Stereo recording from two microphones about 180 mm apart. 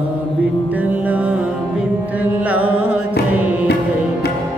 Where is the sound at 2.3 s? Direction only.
10° right (ahead or behind).